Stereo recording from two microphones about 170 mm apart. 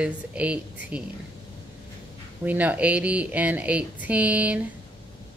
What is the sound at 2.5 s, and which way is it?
A woman's voice, 10° right (ahead or behind).